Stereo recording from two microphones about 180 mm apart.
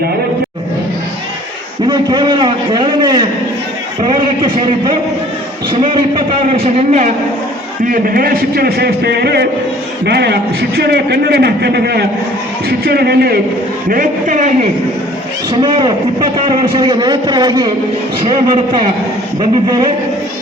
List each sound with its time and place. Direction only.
1.9 s a man's voice: 25° right (ahead or behind)
5.8 s a man's voice: 25° right (ahead or behind)
7.9 s a man's voice: 55° right (ahead or behind)
13.9 s a man's voice: 45° right (ahead or behind)
15.6 s a man's voice: 25° right (ahead or behind)